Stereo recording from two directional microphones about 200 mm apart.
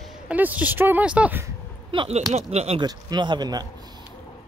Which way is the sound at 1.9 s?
30° right (ahead or behind).